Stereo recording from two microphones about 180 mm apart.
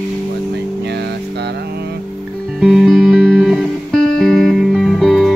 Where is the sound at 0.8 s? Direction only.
65° right (ahead or behind).